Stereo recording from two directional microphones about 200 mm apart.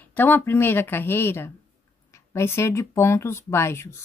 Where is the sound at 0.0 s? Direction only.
10° left (ahead or behind).